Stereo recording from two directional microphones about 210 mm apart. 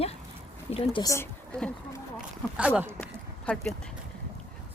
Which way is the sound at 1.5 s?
5° left (ahead or behind).